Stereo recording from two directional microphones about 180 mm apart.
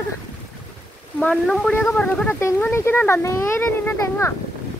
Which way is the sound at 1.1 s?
5° left (ahead or behind).